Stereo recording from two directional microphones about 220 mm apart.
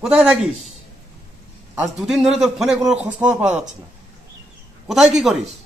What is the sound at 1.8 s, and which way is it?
A man's voice, centre (ahead or behind).